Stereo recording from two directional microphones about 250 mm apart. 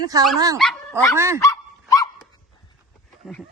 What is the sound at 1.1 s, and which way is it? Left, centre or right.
Speech, centre.